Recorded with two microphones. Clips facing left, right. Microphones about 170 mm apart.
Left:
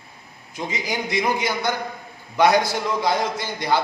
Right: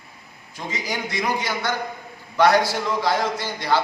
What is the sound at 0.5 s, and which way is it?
A man's voice, 20° left (ahead or behind).